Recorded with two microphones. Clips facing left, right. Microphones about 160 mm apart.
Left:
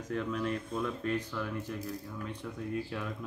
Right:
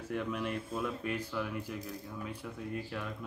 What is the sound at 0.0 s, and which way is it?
Speech, 10° right (ahead or behind).